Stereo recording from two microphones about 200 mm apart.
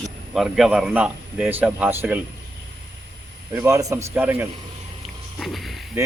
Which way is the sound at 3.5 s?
15° right (ahead or behind).